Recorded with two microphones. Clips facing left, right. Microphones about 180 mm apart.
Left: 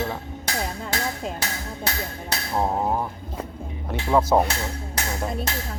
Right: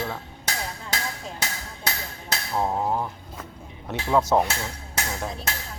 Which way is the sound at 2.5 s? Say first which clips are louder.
Left 1 dB; 10° left (ahead or behind).